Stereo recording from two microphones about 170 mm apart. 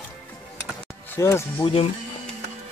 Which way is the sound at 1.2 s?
15° left (ahead or behind).